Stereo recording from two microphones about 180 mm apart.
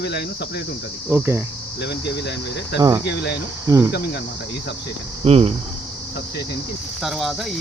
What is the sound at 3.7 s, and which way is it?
Speech, 20° right (ahead or behind).